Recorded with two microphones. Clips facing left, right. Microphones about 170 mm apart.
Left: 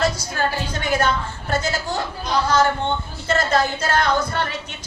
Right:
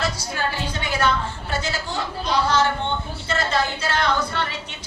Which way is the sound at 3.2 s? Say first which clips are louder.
Left 4 dB; 45° left (ahead or behind).